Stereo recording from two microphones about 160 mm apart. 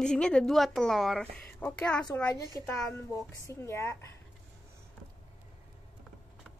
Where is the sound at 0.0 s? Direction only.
5° left (ahead or behind).